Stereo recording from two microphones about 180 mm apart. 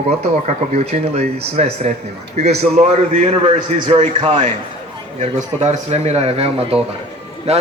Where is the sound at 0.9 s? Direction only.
35° right (ahead or behind).